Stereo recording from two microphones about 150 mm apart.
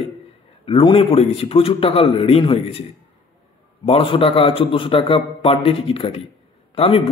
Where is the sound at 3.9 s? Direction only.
35° left (ahead or behind).